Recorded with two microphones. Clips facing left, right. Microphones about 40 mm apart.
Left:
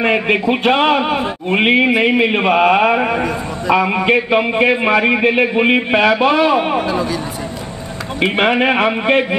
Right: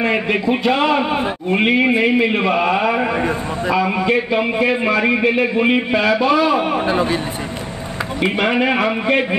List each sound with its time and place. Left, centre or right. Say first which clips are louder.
0.0 s a man's voice: left 3 dB; left
2.9 s a man's voice: left 3 dB; left
3.7 s a man's voice: left 4 dB; left
6.2 s a man's voice: left 2 dB; left
6.9 s a man's voice: right 1 dB; right
8.2 s a man's voice: left 3 dB; left